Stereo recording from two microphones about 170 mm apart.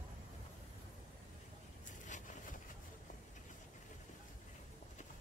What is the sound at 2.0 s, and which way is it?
Vehicle, 45° left (ahead or behind).